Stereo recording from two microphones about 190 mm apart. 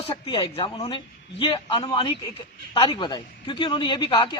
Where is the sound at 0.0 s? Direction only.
25° left (ahead or behind).